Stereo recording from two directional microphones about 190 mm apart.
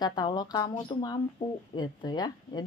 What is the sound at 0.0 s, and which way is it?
A woman's voice, 20° left (ahead or behind).